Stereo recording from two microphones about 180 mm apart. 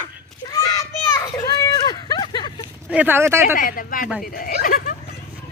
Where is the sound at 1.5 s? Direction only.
20° left (ahead or behind).